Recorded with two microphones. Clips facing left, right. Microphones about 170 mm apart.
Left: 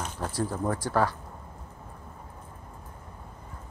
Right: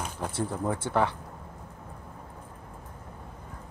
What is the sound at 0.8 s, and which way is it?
Speech, 20° right (ahead or behind).